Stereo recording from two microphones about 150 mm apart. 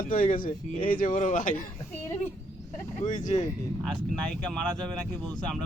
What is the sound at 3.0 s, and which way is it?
Speech, 60° left (ahead or behind).